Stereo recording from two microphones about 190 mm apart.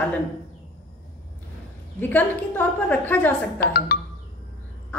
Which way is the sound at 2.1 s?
10° left (ahead or behind).